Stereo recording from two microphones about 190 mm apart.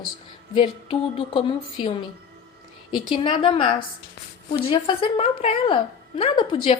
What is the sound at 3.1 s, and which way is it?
A woman's voice, 25° left (ahead or behind).